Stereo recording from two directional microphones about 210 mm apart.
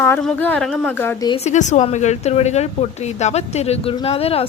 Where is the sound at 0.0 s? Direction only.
5° left (ahead or behind).